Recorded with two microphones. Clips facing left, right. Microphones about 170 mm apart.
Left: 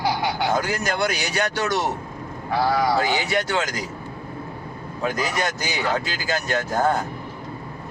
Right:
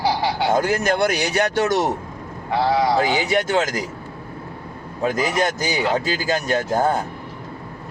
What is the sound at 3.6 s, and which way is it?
Speech, 50° right (ahead or behind).